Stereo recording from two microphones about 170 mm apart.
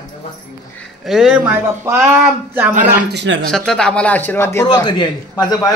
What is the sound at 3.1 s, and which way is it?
Speech, 90° right.